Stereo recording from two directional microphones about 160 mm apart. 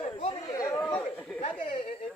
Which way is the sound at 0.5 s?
20° left (ahead or behind).